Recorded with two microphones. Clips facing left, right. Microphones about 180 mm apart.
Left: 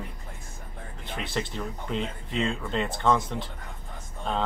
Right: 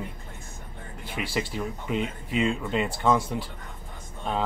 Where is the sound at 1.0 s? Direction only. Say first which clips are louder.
Right 2 dB; 10° right (ahead or behind).